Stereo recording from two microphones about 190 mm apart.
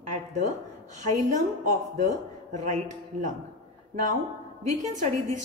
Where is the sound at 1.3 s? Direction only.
40° right (ahead or behind).